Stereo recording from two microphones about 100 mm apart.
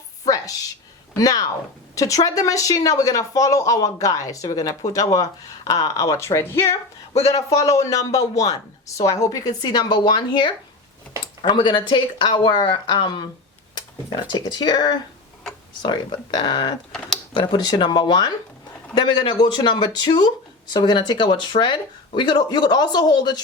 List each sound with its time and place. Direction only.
1.1 s speech: 35° left (ahead or behind)
7.1 s speech: 90° left
7.3 s speech: 35° left (ahead or behind)
16.9 s speech: 5° left (ahead or behind)
17.3 s speech: 45° left (ahead or behind)